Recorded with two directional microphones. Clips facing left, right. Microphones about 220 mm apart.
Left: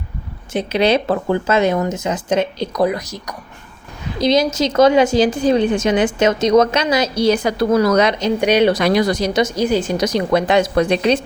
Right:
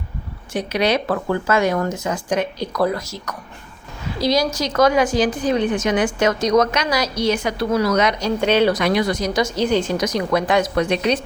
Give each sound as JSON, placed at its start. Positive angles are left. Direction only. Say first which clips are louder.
{"t": 0.5, "sound": "a woman's voice", "louder": "left 4 dB", "side_deg": 25}
{"t": 8.0, "sound": "a woman's voice", "louder": "left 3 dB", "side_deg": 20}
{"t": 8.7, "sound": "speech", "louder": "left 3 dB", "side_deg": 35}
{"t": 9.4, "sound": "a woman's voice", "louder": "left 1 dB", "side_deg": 10}
{"t": 10.0, "sound": "a woman's voice", "louder": "left 3 dB", "side_deg": 30}